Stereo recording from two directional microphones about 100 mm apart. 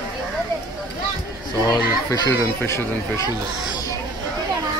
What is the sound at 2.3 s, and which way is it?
Speech, 25° left (ahead or behind).